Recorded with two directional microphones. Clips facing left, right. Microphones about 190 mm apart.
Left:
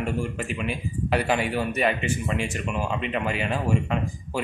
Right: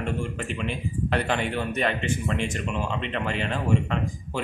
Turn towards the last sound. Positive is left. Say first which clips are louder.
# even
turn(degrees=10)  # may be behind; listen again after turning